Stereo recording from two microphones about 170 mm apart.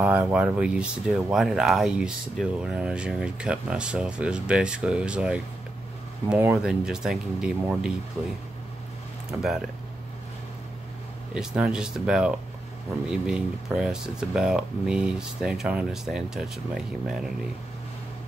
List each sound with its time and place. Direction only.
0.0 s speech: 10° right (ahead or behind)
9.3 s speech: 5° right (ahead or behind)
11.3 s speech: 5° right (ahead or behind)